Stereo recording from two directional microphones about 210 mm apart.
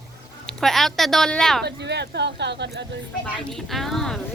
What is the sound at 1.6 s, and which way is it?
Speech, 55° right (ahead or behind).